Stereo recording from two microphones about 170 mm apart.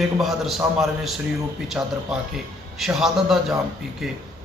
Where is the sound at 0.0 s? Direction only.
Centre (ahead or behind).